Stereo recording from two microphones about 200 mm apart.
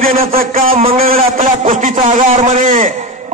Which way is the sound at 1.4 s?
40° right (ahead or behind).